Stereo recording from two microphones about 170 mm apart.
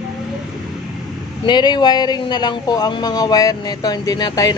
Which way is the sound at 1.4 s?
25° left (ahead or behind).